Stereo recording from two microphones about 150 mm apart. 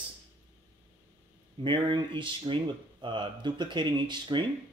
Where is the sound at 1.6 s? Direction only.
30° right (ahead or behind).